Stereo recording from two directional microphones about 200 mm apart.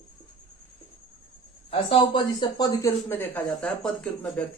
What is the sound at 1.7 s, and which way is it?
Speech, 25° left (ahead or behind).